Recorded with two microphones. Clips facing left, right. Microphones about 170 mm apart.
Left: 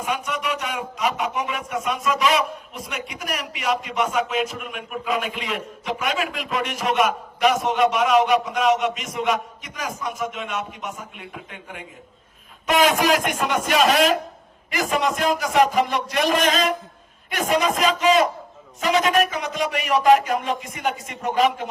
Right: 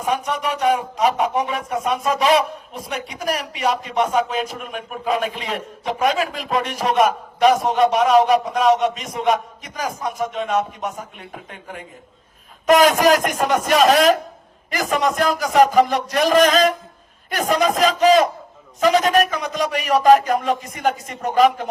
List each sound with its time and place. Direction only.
0.1 s speech: 35° right (ahead or behind)